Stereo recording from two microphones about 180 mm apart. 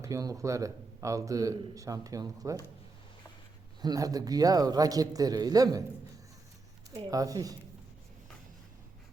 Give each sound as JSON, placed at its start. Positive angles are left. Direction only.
{"t": 0.0, "sound": "a man's voice", "side_deg": -20}
{"t": 3.8, "sound": "speech", "side_deg": -20}
{"t": 7.1, "sound": "speech", "side_deg": -20}